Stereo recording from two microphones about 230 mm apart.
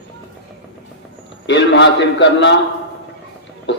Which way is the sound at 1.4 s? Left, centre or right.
Left.